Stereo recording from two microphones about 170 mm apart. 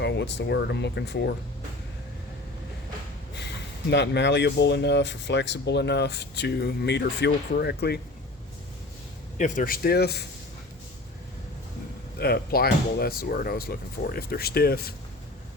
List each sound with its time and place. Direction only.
0.0 s speech: 90° left
3.3 s speech: 90° left; by 7.9 s 70° left (ahead or behind)
9.4 s speech: 55° left (ahead or behind); by 10.2 s 70° left (ahead or behind)
12.2 s speech: 65° left (ahead or behind)